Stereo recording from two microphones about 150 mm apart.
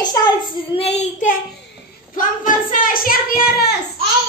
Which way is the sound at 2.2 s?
65° left (ahead or behind).